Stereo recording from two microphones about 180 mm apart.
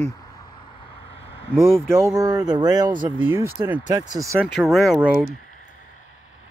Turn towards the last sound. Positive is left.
turn(degrees=-5)  # may be behind; listen again after turning